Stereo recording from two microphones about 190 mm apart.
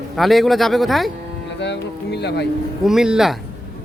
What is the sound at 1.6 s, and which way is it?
Speech, 65° left (ahead or behind).